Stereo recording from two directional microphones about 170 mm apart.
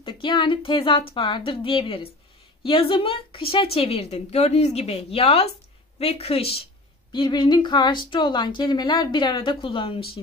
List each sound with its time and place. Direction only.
0.0 s speech: 30° left (ahead or behind)